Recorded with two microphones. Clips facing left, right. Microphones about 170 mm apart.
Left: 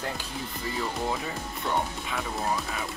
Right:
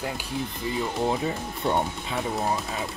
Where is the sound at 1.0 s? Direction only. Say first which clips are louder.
Right 5 dB; 20° right (ahead or behind).